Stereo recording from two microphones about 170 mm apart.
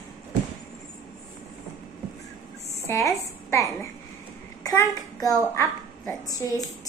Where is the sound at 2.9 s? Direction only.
15° left (ahead or behind).